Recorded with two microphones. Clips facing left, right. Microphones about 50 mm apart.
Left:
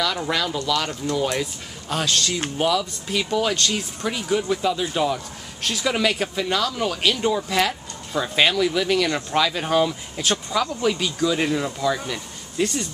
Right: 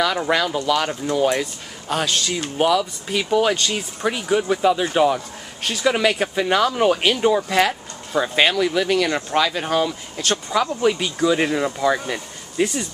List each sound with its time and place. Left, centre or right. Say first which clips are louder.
0.0 s speech: right 4 dB; centre
5.6 s speech: right 3 dB; centre
10.3 s speech: right 3 dB; centre